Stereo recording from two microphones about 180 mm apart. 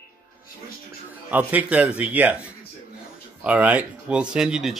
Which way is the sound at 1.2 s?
10° right (ahead or behind).